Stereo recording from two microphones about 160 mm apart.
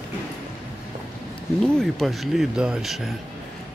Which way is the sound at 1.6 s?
5° left (ahead or behind).